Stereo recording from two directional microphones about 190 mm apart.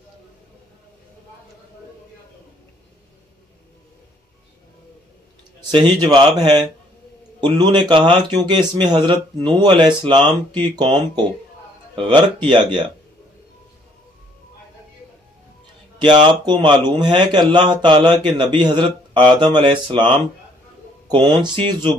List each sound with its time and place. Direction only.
5.7 s speech: 25° right (ahead or behind)
7.3 s speech: 20° right (ahead or behind)
16.0 s speech: 25° right (ahead or behind)